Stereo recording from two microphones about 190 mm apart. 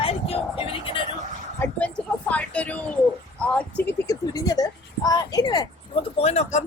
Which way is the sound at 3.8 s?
15° left (ahead or behind).